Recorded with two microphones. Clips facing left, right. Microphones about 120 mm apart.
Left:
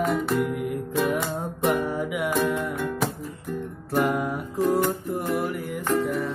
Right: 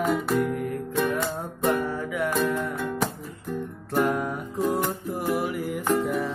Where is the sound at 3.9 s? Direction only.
5° left (ahead or behind).